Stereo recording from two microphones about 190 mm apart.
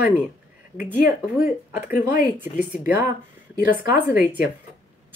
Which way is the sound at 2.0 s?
45° left (ahead or behind).